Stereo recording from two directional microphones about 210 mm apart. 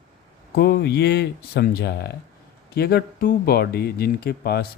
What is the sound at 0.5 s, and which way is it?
Speech, 50° left (ahead or behind).